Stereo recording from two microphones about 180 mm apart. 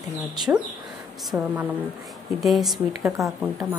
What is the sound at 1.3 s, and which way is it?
Speech, 10° right (ahead or behind).